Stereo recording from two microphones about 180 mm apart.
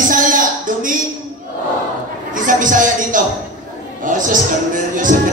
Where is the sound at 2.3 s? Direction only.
45° right (ahead or behind).